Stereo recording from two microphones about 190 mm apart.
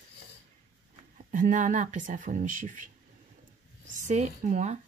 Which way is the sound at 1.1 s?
45° right (ahead or behind).